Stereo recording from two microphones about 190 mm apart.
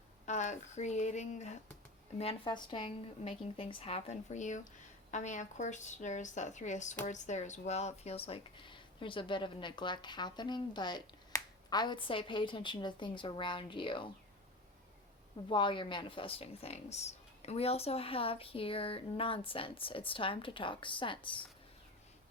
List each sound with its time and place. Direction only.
0.3 s speech: 40° left (ahead or behind)
15.4 s speech: 25° left (ahead or behind)